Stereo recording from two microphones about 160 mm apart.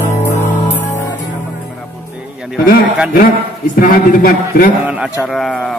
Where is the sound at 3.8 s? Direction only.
65° left (ahead or behind).